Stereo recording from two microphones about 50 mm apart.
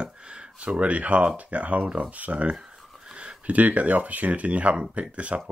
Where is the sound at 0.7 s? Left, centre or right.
Right.